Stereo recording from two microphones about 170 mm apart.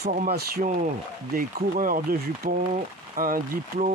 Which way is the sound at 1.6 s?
55° right (ahead or behind).